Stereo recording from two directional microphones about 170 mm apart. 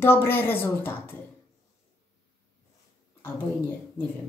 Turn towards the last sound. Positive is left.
turn(degrees=10)  # may be behind; listen again after turning